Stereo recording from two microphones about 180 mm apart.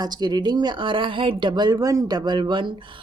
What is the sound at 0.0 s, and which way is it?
Speech, 20° right (ahead or behind).